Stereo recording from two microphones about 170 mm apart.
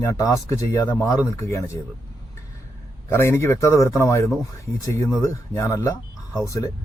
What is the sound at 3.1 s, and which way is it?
Speech, 15° left (ahead or behind).